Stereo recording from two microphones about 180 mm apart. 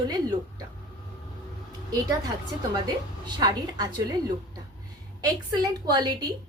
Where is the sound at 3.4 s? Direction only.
20° right (ahead or behind).